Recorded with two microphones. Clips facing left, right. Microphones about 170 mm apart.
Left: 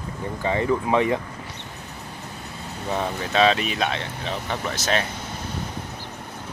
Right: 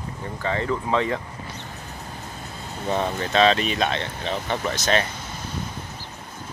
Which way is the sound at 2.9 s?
5° left (ahead or behind).